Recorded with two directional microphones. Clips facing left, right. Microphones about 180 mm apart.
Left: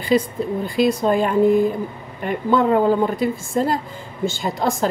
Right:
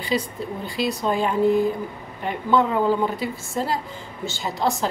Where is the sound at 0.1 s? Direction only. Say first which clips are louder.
Left 7 dB; 50° left (ahead or behind).